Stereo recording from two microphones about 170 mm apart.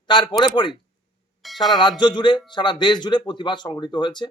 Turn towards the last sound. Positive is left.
turn(degrees=25)  # may be behind; listen again after turning